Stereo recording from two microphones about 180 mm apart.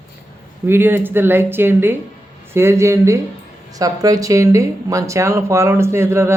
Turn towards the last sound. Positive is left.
turn(degrees=-15)  # may be behind; listen again after turning